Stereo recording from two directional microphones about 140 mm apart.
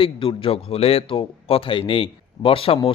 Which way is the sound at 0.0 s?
40° left (ahead or behind).